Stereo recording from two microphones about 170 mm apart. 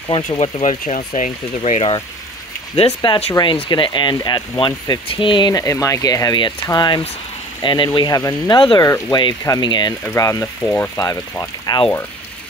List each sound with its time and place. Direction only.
0.4 s speech: 45° left (ahead or behind); by 12.0 s 25° left (ahead or behind)